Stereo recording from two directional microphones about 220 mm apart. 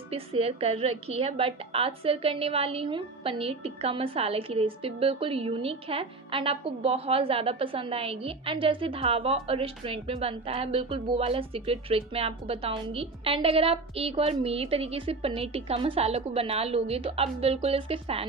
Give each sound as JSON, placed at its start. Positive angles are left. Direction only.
{"t": 0.1, "sound": "a woman's voice", "side_deg": -25}